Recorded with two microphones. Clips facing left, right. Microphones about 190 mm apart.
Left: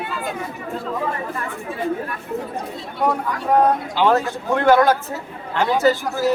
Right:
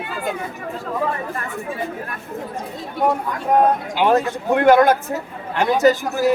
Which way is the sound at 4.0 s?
15° right (ahead or behind).